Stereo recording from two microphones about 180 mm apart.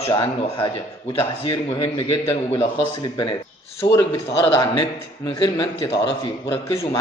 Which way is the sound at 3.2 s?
25° left (ahead or behind).